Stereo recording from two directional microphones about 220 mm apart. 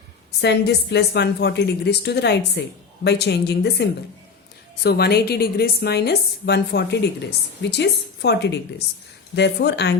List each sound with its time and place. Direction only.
0.3 s a woman's voice: 50° left (ahead or behind)